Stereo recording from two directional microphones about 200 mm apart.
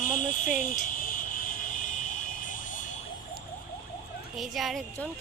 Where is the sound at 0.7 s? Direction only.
45° left (ahead or behind).